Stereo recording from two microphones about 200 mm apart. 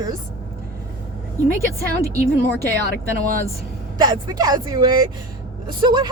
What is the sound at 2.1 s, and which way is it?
Speech, 50° right (ahead or behind).